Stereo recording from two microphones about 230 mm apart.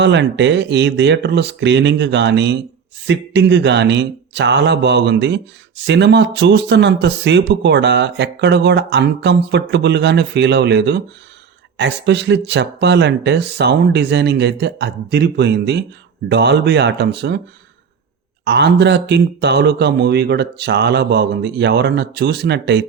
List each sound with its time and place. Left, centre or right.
0.0 s speech: right
18.4 s speech: right